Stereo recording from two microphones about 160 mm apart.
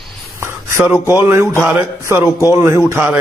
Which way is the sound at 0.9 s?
15° right (ahead or behind).